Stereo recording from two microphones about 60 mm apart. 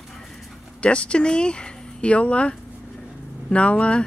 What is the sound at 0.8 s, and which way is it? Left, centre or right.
Speech, centre.